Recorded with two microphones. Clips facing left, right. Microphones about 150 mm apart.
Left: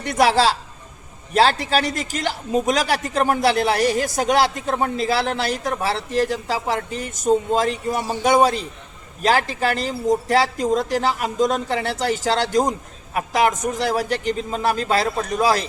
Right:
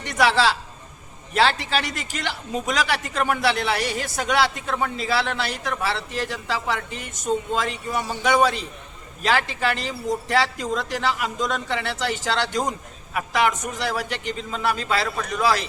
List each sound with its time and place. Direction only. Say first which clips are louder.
0.0 s speech: left 3 dB; 40° left (ahead or behind)